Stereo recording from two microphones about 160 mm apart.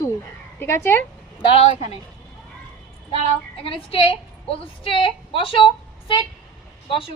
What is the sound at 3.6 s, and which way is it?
A woman's voice, 35° left (ahead or behind).